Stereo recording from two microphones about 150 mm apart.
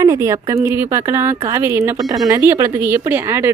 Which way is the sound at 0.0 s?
20° right (ahead or behind).